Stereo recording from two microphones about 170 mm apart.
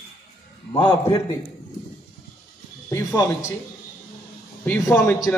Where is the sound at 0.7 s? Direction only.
25° left (ahead or behind).